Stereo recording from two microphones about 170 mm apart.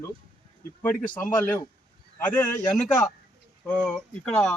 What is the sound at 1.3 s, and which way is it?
Speech, 10° left (ahead or behind).